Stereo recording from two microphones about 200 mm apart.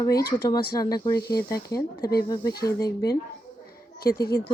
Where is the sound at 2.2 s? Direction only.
20° left (ahead or behind).